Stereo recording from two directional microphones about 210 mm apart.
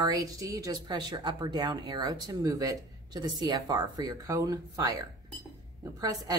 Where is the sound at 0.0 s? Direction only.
15° right (ahead or behind).